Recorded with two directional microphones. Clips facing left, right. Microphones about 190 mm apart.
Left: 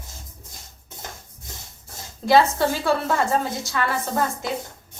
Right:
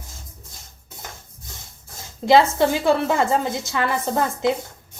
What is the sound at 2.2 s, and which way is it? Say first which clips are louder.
A woman's voice: right 2 dB; 20° right (ahead or behind).